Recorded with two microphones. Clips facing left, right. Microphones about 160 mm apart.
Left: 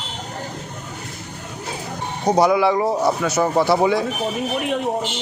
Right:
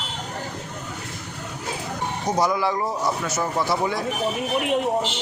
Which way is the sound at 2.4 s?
70° left (ahead or behind).